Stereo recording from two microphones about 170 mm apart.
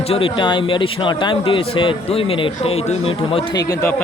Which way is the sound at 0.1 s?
30° left (ahead or behind).